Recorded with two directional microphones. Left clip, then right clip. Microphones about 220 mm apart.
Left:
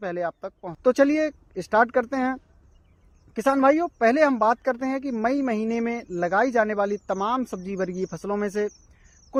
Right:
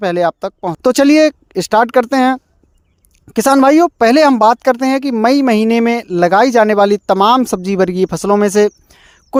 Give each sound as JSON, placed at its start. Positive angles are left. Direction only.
{"t": 0.0, "sound": "speech", "side_deg": -45}